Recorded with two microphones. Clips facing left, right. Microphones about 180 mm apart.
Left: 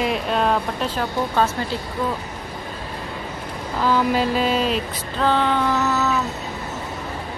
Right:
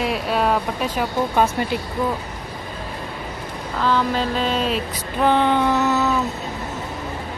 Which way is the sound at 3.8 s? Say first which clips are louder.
Left 1 dB; 10° left (ahead or behind).